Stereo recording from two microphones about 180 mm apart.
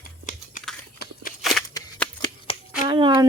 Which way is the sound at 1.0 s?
65° left (ahead or behind).